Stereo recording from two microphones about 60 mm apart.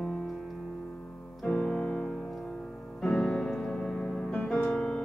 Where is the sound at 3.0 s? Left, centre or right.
Centre.